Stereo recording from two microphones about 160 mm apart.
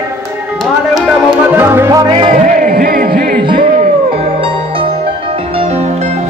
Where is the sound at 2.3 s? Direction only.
55° right (ahead or behind).